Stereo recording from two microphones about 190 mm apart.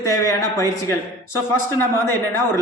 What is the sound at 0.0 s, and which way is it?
Speech, 20° left (ahead or behind).